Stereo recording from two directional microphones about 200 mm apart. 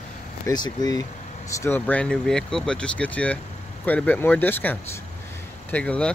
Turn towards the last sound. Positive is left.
turn(degrees=5)  # may be behind; listen again after turning